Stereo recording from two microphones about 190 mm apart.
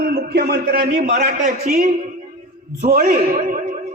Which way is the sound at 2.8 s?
55° right (ahead or behind).